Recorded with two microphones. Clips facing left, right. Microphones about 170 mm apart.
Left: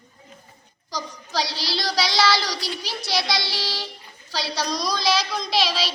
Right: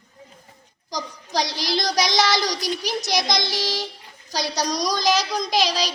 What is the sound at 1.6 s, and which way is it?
A woman's voice, 45° right (ahead or behind).